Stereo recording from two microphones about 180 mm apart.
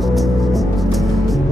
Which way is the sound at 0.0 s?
Centre (ahead or behind).